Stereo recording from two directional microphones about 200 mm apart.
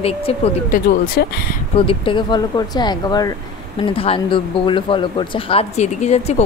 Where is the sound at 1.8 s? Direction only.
25° left (ahead or behind).